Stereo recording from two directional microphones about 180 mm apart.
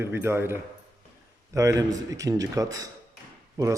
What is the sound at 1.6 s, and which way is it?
A man's voice, 20° right (ahead or behind).